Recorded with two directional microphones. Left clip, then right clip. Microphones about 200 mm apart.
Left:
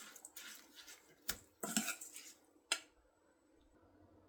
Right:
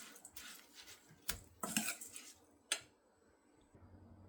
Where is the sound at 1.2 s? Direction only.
Centre (ahead or behind).